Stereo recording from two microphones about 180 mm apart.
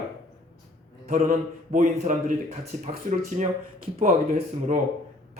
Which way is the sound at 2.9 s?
45° right (ahead or behind).